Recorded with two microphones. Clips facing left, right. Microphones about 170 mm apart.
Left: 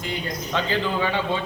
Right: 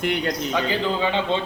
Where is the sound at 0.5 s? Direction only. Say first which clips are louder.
Left 2 dB; 15° right (ahead or behind).